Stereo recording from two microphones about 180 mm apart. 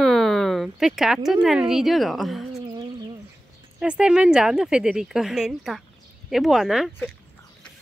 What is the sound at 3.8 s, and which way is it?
Speech, 5° right (ahead or behind).